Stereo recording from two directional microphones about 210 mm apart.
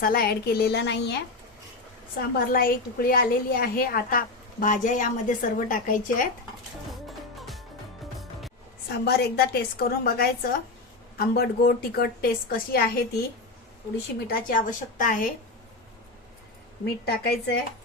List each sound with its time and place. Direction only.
0.0 s a woman's voice: 45° left (ahead or behind)
2.3 s a woman's voice: 45° left (ahead or behind)
7.3 s music: centre (ahead or behind)
8.9 s a woman's voice: 50° left (ahead or behind)
14.3 s a woman's voice: 45° left (ahead or behind)
16.8 s a woman's voice: 50° left (ahead or behind)